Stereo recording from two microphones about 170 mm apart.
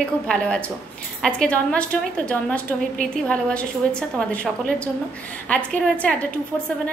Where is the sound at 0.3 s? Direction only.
5° left (ahead or behind).